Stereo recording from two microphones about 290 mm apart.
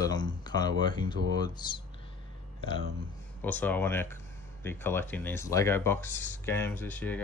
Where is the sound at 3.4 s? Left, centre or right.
Centre.